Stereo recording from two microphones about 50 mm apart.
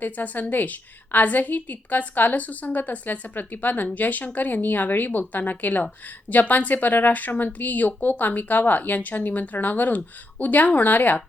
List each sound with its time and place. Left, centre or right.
0.0 s speech: left